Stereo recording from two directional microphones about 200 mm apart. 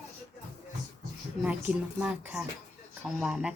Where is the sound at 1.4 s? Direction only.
5° right (ahead or behind).